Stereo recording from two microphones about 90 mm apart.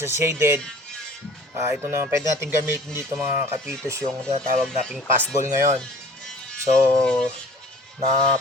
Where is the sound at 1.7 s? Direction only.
30° right (ahead or behind).